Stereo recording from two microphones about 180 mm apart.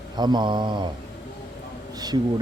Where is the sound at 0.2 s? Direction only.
25° right (ahead or behind).